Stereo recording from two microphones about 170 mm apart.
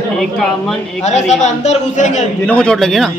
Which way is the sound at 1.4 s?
40° left (ahead or behind).